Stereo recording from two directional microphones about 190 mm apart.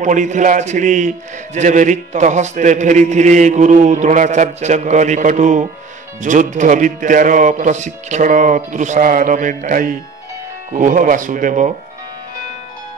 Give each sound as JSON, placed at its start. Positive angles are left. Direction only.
{"t": 0.0, "sound": "a man's voice", "side_deg": -40}